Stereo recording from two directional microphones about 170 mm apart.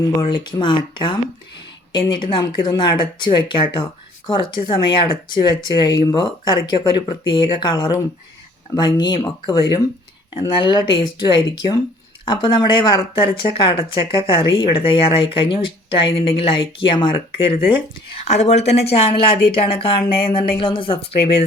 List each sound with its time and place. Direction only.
0.2 s speech: 25° left (ahead or behind)